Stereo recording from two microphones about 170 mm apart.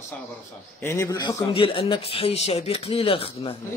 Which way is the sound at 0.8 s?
15° left (ahead or behind).